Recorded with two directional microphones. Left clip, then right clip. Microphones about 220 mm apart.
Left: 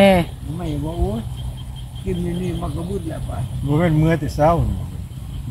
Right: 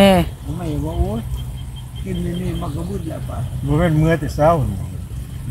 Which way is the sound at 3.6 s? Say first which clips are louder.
Right 1 dB; centre (ahead or behind).